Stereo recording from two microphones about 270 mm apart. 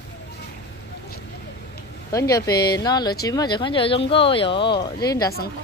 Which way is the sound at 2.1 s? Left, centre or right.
Centre.